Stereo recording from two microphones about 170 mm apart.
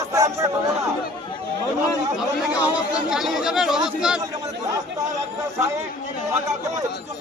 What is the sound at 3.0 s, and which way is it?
Speech, centre (ahead or behind).